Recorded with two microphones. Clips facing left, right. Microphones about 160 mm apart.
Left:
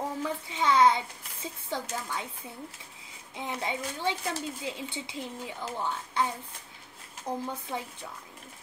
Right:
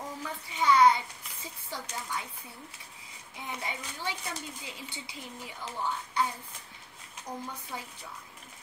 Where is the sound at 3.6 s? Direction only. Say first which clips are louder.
Left 7 dB; 25° left (ahead or behind).